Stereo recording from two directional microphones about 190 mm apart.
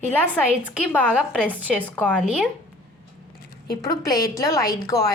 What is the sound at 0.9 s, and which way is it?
A woman's voice, 10° left (ahead or behind).